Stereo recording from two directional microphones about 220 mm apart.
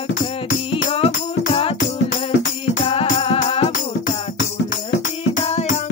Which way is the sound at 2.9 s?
25° left (ahead or behind).